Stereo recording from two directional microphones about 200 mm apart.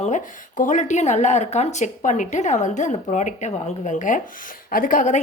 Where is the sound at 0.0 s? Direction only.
40° left (ahead or behind).